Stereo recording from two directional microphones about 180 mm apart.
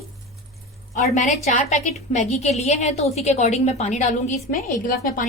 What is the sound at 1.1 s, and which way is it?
A woman's voice, 40° left (ahead or behind).